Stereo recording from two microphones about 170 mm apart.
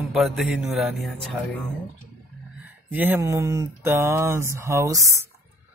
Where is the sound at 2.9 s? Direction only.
10° right (ahead or behind).